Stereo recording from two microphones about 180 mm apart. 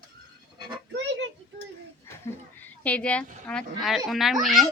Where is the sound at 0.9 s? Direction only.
80° right.